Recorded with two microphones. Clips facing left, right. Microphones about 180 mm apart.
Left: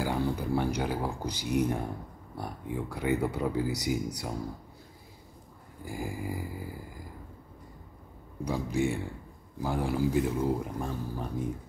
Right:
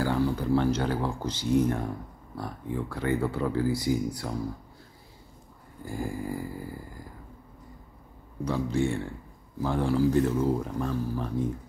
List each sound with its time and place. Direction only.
0.0 s speech: 15° left (ahead or behind)
5.9 s speech: 15° left (ahead or behind)
8.5 s speech: 15° left (ahead or behind)